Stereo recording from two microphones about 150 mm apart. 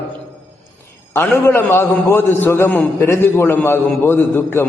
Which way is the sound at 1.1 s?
15° left (ahead or behind).